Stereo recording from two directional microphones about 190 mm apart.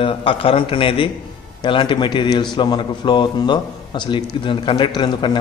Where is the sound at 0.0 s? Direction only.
30° left (ahead or behind).